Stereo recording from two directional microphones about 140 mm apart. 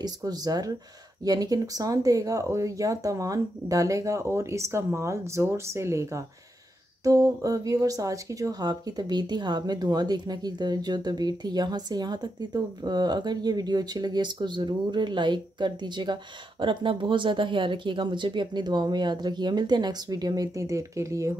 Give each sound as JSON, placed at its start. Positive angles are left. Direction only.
{"t": 0.0, "sound": "speech", "side_deg": -30}